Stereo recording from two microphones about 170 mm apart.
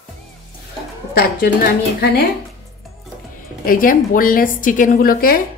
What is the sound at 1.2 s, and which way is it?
A woman's voice, 65° left (ahead or behind).